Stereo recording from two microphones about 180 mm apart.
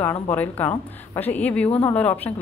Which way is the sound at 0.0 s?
10° left (ahead or behind).